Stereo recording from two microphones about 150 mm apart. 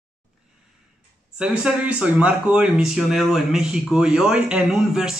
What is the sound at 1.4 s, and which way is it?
Speech, 5° right (ahead or behind).